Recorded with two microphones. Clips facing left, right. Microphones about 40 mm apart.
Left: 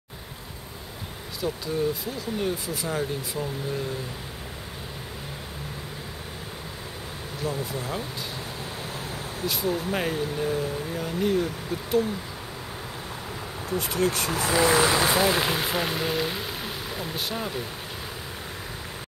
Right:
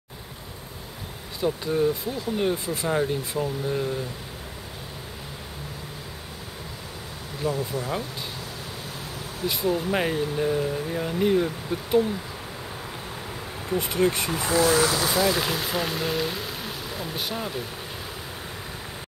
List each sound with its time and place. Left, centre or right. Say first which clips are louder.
1.4 s speech: right 4 dB; right
3.0 s speech: right 4 dB; centre
7.4 s speech: right 4 dB; right
9.6 s speech: right 3 dB; right
13.7 s speech: right 2 dB; right
14.5 s speech: even; left; by 17.6 s centre